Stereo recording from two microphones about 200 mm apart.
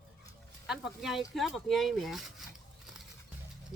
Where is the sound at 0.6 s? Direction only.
Centre (ahead or behind).